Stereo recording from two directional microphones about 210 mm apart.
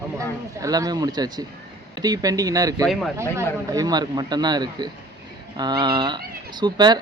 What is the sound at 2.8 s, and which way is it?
Speech, centre (ahead or behind).